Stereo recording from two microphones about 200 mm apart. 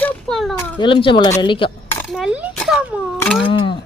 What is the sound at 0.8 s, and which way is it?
Speech, 25° left (ahead or behind).